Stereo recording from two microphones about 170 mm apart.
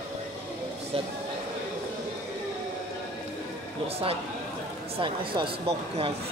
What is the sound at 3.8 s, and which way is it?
Speech, 35° right (ahead or behind).